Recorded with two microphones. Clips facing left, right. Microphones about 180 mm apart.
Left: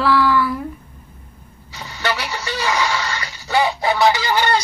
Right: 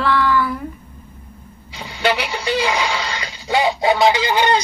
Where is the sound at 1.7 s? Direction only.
15° right (ahead or behind).